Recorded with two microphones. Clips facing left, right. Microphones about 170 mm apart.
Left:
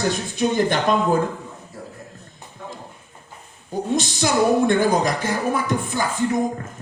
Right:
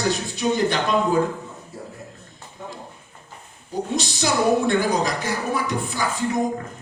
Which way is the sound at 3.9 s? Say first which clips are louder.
Left 3 dB; 50° left (ahead or behind).